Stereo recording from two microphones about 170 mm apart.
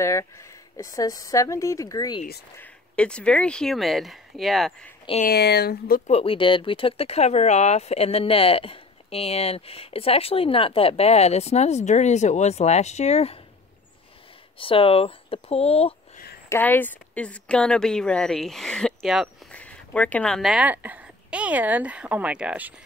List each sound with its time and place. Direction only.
0.0 s speech: 15° left (ahead or behind)
2.6 s speech: 5° left (ahead or behind)
5.2 s speech: 70° left (ahead or behind)
6.0 s speech: 35° left (ahead or behind)
14.6 s speech: 30° left (ahead or behind)
16.4 s speech: 10° left (ahead or behind); by 22.8 s 10° right (ahead or behind)